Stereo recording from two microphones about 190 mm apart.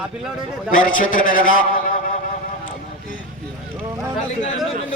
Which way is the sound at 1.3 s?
90° left.